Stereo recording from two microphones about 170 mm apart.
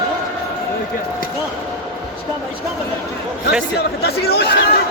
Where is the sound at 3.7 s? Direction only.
70° left (ahead or behind).